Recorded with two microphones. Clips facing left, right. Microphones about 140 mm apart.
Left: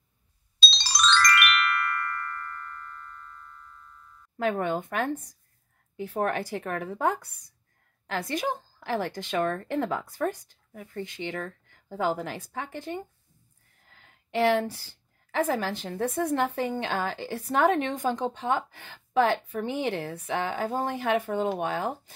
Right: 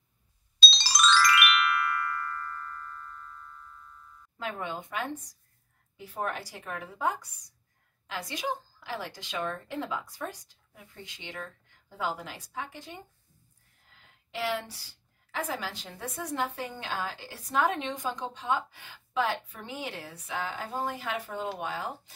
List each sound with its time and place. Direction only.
0.6 s music: centre (ahead or behind)
4.4 s a woman's voice: 55° left (ahead or behind)